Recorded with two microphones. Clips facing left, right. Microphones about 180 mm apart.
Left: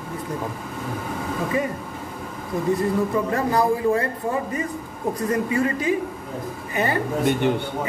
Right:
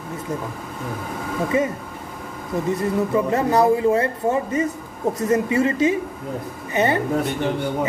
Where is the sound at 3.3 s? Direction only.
20° right (ahead or behind).